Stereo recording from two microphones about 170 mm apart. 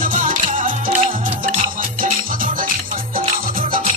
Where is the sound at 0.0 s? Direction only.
50° right (ahead or behind).